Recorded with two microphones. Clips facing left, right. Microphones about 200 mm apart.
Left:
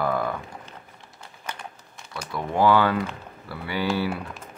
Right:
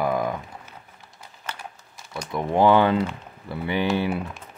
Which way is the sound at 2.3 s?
20° right (ahead or behind).